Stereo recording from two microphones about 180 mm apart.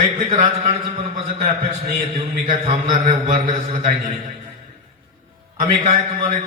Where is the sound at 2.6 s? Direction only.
40° right (ahead or behind).